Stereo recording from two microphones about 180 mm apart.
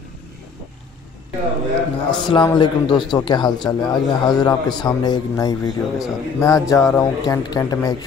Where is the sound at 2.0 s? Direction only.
25° left (ahead or behind).